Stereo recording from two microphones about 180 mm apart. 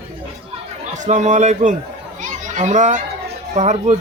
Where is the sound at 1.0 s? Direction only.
40° right (ahead or behind).